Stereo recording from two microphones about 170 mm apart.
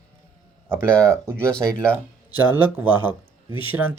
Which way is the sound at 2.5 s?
10° right (ahead or behind).